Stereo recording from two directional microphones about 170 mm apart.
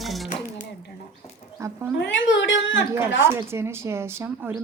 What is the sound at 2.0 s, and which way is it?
Speech, 90° left.